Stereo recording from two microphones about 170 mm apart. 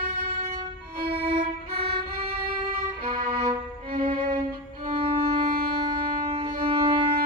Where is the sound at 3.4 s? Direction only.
25° right (ahead or behind).